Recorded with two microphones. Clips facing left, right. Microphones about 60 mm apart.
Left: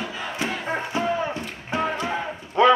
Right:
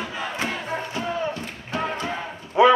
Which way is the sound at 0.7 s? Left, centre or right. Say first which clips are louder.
Left 3 dB; left.